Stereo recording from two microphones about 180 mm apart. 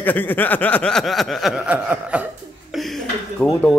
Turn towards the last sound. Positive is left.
turn(degrees=5)  # may be behind; listen again after turning